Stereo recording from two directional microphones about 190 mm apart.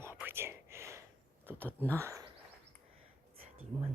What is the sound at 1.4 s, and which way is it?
Speech, 10° right (ahead or behind).